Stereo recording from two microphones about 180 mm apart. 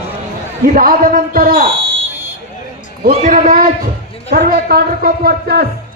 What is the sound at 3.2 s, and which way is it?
Speech, 45° right (ahead or behind).